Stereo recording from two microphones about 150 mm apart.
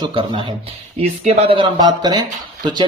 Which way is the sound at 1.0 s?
45° right (ahead or behind).